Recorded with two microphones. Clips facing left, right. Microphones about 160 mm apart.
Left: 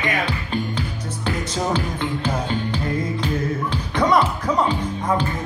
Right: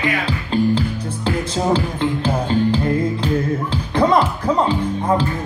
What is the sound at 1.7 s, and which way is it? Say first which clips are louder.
Speech: right 4 dB; 30° right (ahead or behind).